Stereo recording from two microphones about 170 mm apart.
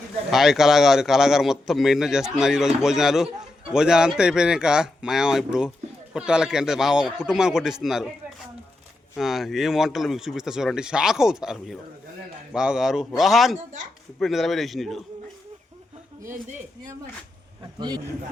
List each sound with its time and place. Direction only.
0.3 s a man's voice: centre (ahead or behind)
9.1 s a man's voice: centre (ahead or behind)
16.2 s speech: 50° right (ahead or behind)
17.6 s a man's voice: 25° right (ahead or behind)